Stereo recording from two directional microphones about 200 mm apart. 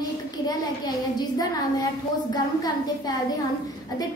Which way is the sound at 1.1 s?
20° left (ahead or behind).